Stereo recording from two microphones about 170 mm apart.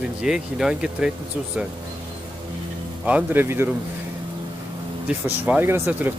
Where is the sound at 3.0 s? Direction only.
10° right (ahead or behind).